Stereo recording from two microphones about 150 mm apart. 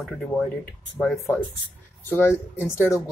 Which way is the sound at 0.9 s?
15° left (ahead or behind).